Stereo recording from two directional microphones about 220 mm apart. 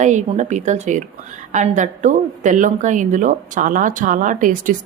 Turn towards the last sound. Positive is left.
turn(degrees=-35)  # may be behind; listen again after turning